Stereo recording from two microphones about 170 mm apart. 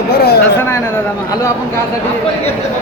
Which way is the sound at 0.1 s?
70° left (ahead or behind).